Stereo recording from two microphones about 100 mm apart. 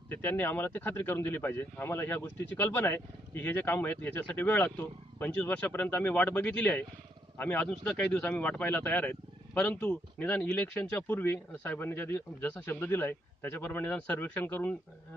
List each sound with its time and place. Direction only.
0.1 s speech: 15° left (ahead or behind)